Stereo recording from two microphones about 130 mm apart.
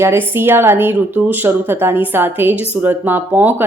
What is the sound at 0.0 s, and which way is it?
A woman's voice, 20° right (ahead or behind).